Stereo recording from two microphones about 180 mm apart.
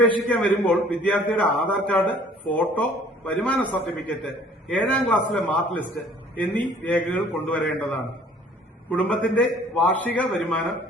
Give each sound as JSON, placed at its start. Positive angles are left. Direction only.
{"t": 0.0, "sound": "a man's voice", "side_deg": 5}
{"t": 8.9, "sound": "a man's voice", "side_deg": 5}